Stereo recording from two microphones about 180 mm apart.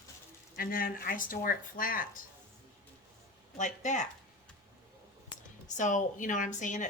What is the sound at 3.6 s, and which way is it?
Speech, 40° left (ahead or behind).